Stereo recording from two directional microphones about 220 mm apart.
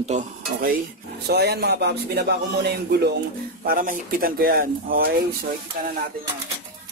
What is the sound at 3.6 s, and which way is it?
Speech, 40° right (ahead or behind).